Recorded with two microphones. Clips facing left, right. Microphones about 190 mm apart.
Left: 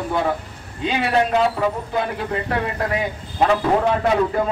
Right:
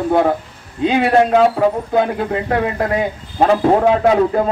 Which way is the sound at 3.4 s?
35° right (ahead or behind).